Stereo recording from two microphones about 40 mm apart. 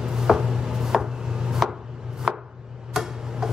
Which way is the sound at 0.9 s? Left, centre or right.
Centre.